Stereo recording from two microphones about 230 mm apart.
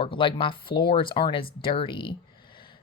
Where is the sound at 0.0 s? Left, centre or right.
Left.